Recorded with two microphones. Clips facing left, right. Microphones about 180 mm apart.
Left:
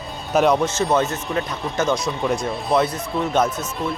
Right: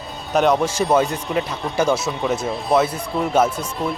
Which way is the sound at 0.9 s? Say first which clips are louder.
Right 2 dB; 10° right (ahead or behind).